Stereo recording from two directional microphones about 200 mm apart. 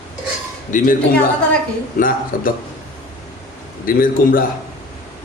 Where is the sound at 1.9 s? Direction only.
45° left (ahead or behind).